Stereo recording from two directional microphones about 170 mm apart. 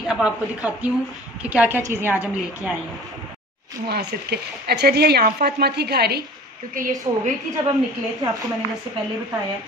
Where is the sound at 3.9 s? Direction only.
70° right (ahead or behind).